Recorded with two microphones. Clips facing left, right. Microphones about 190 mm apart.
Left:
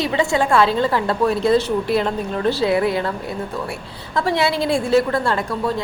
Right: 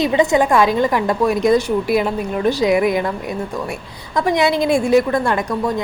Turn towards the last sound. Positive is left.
turn(degrees=-15)  # may be behind; listen again after turning